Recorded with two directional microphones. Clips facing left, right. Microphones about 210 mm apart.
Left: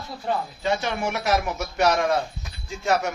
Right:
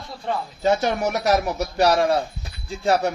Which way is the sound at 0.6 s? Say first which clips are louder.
Right 5 dB; 40° right (ahead or behind).